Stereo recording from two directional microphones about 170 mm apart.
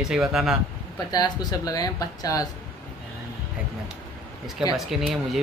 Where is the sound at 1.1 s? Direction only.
25° left (ahead or behind).